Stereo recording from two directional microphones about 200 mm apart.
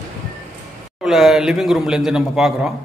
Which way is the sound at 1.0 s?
Centre (ahead or behind).